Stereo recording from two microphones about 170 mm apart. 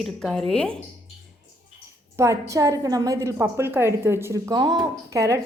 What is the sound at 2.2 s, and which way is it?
A woman's voice, 20° right (ahead or behind).